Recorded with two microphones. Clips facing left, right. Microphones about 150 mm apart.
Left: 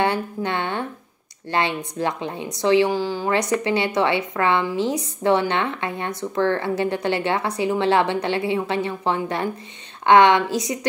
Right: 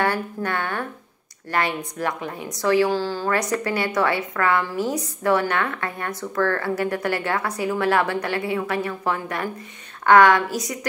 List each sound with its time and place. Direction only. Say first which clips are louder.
0.0 s a woman's voice: left 1 dB; 20° left (ahead or behind)